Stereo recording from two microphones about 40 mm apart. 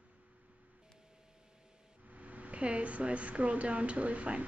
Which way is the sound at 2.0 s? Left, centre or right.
Right.